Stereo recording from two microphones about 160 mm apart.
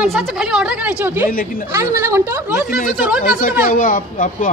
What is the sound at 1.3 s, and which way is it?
Speech, 65° left (ahead or behind).